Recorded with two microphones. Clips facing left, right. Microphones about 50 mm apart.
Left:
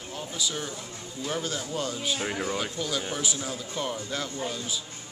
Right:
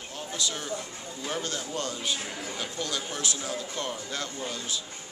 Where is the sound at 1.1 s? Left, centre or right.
Centre.